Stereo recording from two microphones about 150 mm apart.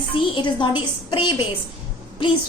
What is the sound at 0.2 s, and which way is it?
A woman's voice, 35° left (ahead or behind).